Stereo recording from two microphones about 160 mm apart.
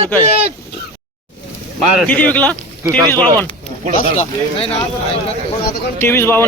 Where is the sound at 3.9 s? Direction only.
40° left (ahead or behind).